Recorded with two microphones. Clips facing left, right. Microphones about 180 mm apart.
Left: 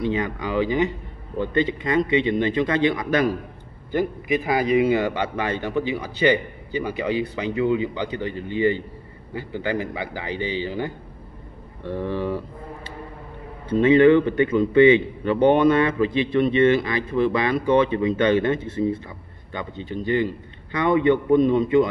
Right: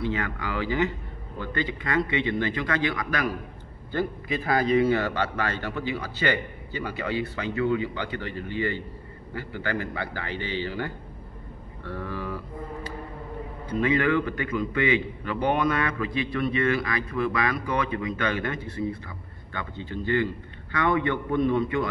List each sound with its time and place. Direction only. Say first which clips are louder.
0.0 s a man's voice: left 5 dB; 20° left (ahead or behind)